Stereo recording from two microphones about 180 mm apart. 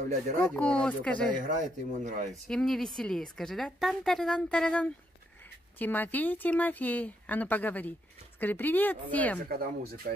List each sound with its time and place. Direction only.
0.5 s a woman's voice: 5° left (ahead or behind)
1.4 s speech: 45° right (ahead or behind)
2.4 s a woman's voice: 5° left (ahead or behind)
9.5 s speech: 55° right (ahead or behind)